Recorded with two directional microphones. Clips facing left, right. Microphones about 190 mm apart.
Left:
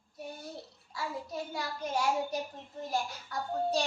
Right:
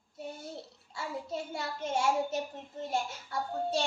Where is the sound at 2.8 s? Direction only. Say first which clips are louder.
Right 1 dB; 25° right (ahead or behind).